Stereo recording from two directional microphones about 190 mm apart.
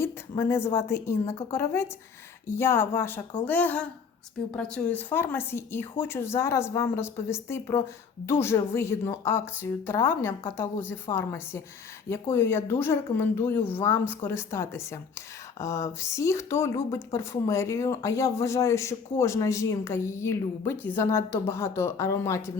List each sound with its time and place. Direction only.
0.0 s speech: 10° left (ahead or behind)